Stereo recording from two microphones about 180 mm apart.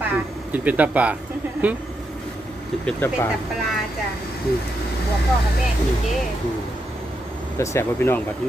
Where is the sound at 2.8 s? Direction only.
15° left (ahead or behind).